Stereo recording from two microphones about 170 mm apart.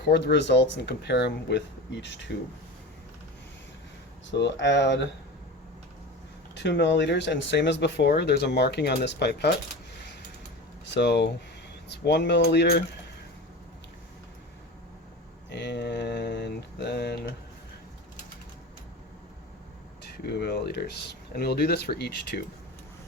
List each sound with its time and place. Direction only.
0.1 s speech: 90° left
4.3 s speech: 90° left
6.5 s speech: 90° left
10.8 s speech: 90° left; by 12.8 s 70° left (ahead or behind)
15.4 s a sound: 90° left
20.2 s speech: 70° left (ahead or behind)